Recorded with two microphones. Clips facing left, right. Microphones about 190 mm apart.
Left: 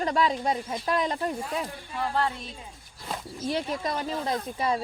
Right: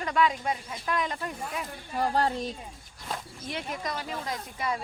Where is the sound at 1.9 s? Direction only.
40° right (ahead or behind).